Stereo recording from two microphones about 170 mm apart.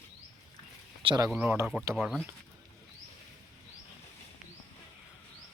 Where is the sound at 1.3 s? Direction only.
10° right (ahead or behind).